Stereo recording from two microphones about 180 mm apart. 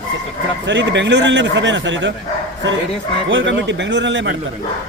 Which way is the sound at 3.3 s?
90° right.